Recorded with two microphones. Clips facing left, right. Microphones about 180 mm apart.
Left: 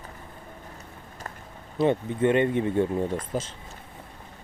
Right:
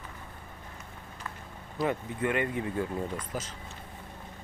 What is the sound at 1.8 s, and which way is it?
Speech, 25° left (ahead or behind).